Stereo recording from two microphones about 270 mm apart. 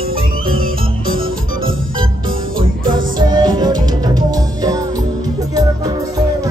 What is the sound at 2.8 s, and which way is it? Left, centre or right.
Music, right.